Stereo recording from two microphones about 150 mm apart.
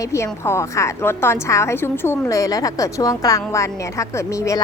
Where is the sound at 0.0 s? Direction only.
20° left (ahead or behind).